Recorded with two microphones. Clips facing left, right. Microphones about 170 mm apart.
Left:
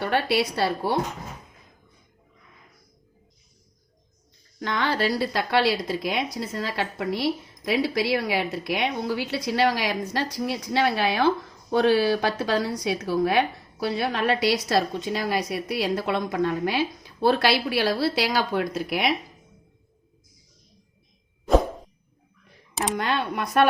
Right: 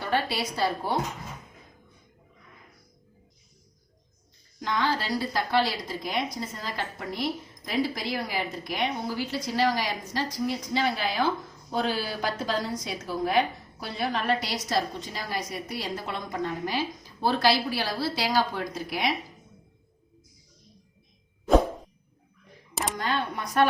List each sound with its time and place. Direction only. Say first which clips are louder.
0.0 s a woman's voice: left 5 dB; 70° left (ahead or behind)
4.6 s a woman's voice: left 3 dB; 65° left (ahead or behind)
23.0 s a woman's voice: left 3 dB; 70° left (ahead or behind)